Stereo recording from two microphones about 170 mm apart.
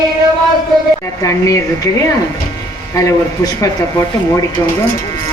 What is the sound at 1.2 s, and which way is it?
Speech, 20° left (ahead or behind).